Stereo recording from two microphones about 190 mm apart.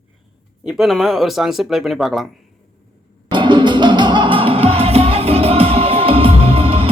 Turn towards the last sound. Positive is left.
turn(degrees=-30)  # may be behind; listen again after turning